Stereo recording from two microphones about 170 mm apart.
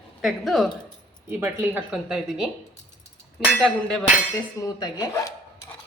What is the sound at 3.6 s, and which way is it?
Speech, centre (ahead or behind).